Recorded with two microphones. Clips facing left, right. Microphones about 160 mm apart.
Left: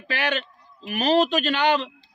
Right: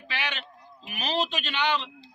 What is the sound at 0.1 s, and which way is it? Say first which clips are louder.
A man's voice: left 8 dB; 45° left (ahead or behind).